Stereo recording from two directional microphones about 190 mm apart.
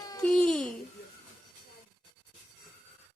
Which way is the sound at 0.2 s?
5° left (ahead or behind).